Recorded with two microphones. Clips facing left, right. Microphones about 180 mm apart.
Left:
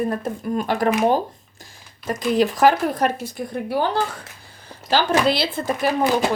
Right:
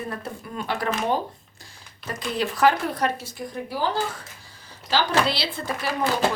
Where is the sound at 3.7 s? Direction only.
60° left (ahead or behind).